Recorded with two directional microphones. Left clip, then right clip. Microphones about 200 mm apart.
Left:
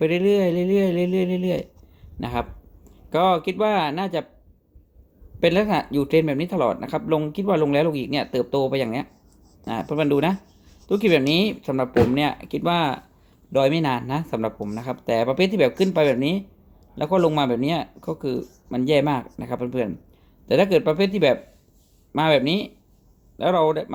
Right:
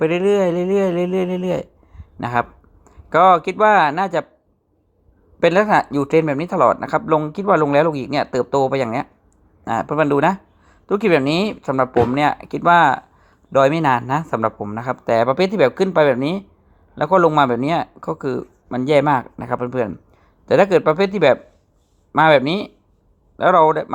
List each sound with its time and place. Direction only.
0.0 s speech: 10° right (ahead or behind)
5.4 s speech: 15° right (ahead or behind)